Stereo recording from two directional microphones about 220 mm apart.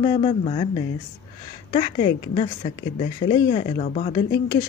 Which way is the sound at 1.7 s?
25° left (ahead or behind).